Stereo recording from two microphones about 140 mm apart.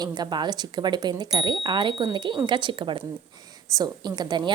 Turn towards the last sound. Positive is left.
turn(degrees=-30)  # may be behind; listen again after turning